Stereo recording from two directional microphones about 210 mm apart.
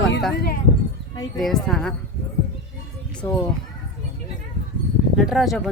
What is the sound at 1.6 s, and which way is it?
Speech, 5° left (ahead or behind).